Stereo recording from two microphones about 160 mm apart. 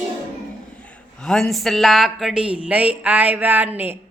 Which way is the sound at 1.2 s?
5° left (ahead or behind).